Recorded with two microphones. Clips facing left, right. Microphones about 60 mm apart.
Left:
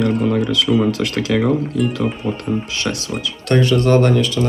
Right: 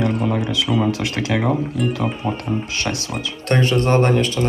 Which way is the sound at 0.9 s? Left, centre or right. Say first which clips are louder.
Left 2 dB; right.